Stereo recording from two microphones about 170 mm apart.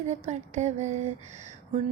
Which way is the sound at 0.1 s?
40° right (ahead or behind).